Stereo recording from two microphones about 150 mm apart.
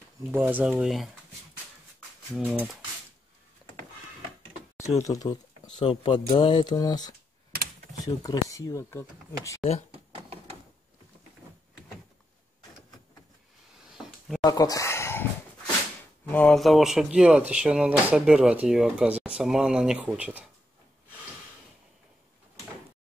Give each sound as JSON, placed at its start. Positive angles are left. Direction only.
{"t": 0.3, "sound": "speech", "side_deg": -10}
{"t": 2.3, "sound": "speech", "side_deg": -10}
{"t": 5.0, "sound": "speech", "side_deg": 25}
{"t": 9.8, "sound": "a sound", "side_deg": -40}
{"t": 13.9, "sound": "a sound", "side_deg": 0}
{"t": 14.4, "sound": "speech", "side_deg": 25}
{"t": 16.3, "sound": "speech", "side_deg": 10}